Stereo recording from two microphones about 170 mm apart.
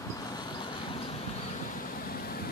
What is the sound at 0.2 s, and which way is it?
Vehicle, 25° left (ahead or behind).